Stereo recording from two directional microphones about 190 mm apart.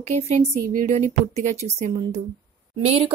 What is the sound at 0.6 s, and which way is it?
A woman's voice, 45° right (ahead or behind).